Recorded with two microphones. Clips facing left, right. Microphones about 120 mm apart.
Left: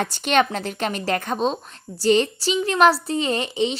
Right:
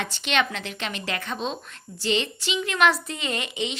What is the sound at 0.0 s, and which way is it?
A woman's voice, 45° left (ahead or behind).